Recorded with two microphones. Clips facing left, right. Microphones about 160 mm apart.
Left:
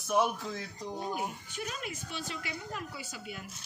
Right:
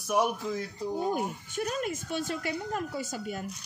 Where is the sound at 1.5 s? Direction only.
45° right (ahead or behind).